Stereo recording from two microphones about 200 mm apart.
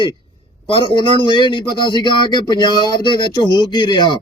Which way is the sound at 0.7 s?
25° left (ahead or behind).